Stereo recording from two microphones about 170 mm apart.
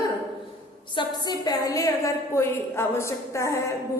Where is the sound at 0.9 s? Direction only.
25° left (ahead or behind).